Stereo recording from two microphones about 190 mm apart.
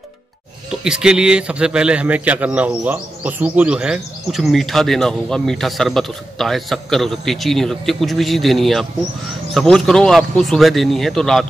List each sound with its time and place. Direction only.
0.7 s a man's voice: 5° right (ahead or behind)